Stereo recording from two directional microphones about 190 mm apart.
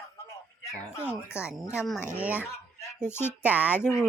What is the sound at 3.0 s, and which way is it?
Speech, 10° left (ahead or behind).